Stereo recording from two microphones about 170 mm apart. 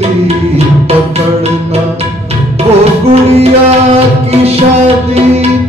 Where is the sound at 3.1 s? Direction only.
35° right (ahead or behind).